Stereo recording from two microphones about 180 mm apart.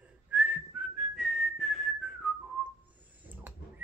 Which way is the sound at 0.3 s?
10° right (ahead or behind).